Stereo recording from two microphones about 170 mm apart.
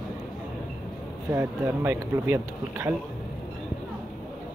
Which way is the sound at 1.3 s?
15° right (ahead or behind).